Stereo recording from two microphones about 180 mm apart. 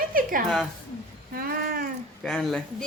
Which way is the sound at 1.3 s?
55° right (ahead or behind).